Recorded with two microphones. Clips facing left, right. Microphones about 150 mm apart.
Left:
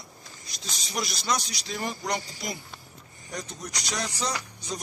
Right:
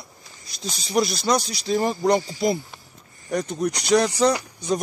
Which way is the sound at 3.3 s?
65° right (ahead or behind).